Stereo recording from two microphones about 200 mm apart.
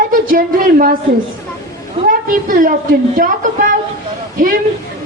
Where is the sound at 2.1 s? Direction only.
45° right (ahead or behind).